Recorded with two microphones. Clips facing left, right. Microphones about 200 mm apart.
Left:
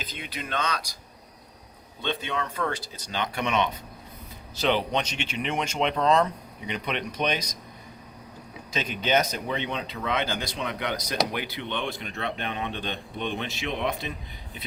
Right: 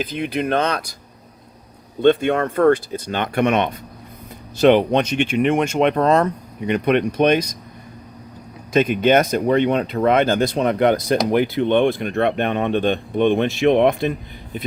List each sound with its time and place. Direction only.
0.3 s speech: 60° right (ahead or behind)
2.0 s speech: 55° right (ahead or behind)
8.7 s speech: 55° right (ahead or behind)